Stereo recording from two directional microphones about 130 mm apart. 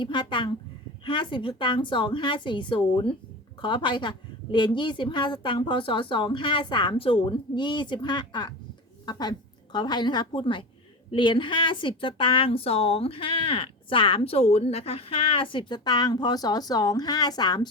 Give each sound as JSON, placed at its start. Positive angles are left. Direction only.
{"t": 0.0, "sound": "a woman's voice", "side_deg": 40}